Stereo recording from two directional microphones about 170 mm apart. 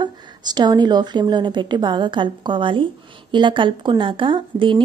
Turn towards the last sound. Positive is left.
turn(degrees=-30)  # may be behind; listen again after turning